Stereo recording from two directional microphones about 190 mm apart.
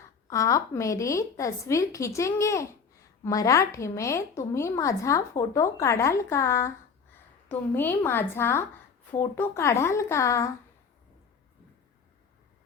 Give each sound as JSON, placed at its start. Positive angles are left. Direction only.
{"t": 0.3, "sound": "a woman's voice", "side_deg": 15}